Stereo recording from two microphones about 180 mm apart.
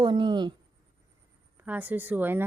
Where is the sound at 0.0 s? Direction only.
25° right (ahead or behind).